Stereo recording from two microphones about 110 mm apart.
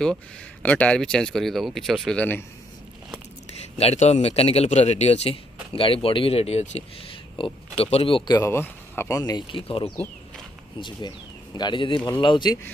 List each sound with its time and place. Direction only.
0.0 s speech: 10° left (ahead or behind)
3.7 s a man's voice: 80° left
5.7 s speech: 55° left (ahead or behind); by 6.7 s 75° left (ahead or behind)
7.1 s speech: 50° left (ahead or behind)
8.3 s speech: 25° left (ahead or behind)
9.2 s speech: 35° left (ahead or behind)
9.6 s speech: 55° left (ahead or behind)
10.8 s speech: 45° left (ahead or behind)